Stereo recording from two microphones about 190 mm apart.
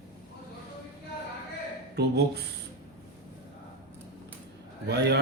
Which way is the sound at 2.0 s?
60° right (ahead or behind).